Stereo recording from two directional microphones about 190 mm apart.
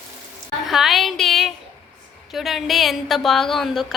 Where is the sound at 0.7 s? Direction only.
Centre (ahead or behind).